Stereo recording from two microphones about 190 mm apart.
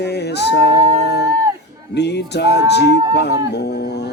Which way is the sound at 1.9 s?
65° left (ahead or behind).